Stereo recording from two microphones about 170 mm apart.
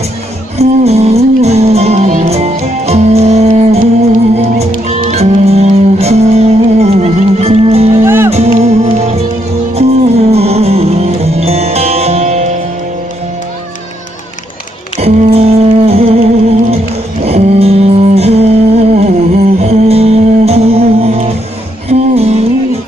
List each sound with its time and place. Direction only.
0.6 s music: 40° right (ahead or behind)
7.9 s music: 15° right (ahead or behind)
8.3 s music: 40° right (ahead or behind)
15.0 s music: 35° right (ahead or behind)